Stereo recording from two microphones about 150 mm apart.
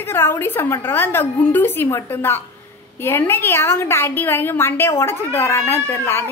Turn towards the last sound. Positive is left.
turn(degrees=15)  # may be behind; listen again after turning